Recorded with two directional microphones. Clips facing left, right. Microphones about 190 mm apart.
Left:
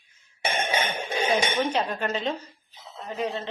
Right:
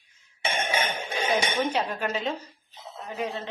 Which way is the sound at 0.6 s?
25° left (ahead or behind).